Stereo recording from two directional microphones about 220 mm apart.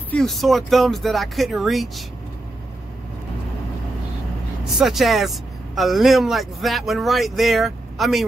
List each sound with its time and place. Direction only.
0.1 s speech: centre (ahead or behind)
4.7 s speech: centre (ahead or behind)